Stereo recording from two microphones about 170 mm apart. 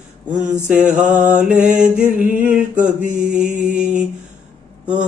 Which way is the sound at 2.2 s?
10° right (ahead or behind).